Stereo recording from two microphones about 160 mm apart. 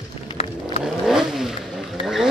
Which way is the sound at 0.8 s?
5° right (ahead or behind).